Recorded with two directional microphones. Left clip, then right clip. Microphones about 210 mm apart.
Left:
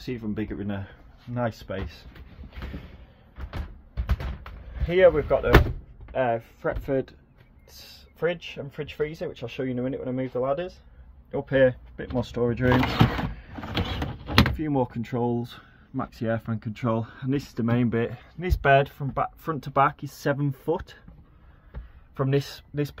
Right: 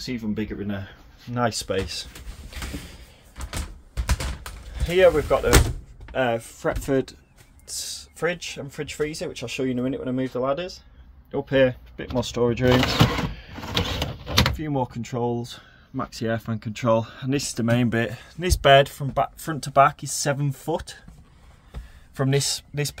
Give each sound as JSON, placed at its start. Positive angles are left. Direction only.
{"t": 0.0, "sound": "speech", "side_deg": 15}
{"t": 0.7, "sound": "speech", "side_deg": -5}
{"t": 1.3, "sound": "speech", "side_deg": -30}
{"t": 3.4, "sound": "a sound", "side_deg": -65}
{"t": 4.8, "sound": "speech", "side_deg": -5}
{"t": 6.1, "sound": "speech", "side_deg": -10}
{"t": 7.6, "sound": "speech", "side_deg": -5}
{"t": 12.4, "sound": "speech", "side_deg": -15}
{"t": 13.3, "sound": "a sound", "side_deg": -15}
{"t": 14.6, "sound": "speech", "side_deg": 5}
{"t": 16.0, "sound": "speech", "side_deg": -5}
{"t": 22.1, "sound": "speech", "side_deg": -10}